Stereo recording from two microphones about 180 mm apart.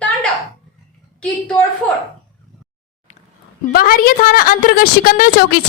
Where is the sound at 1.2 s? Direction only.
5° left (ahead or behind).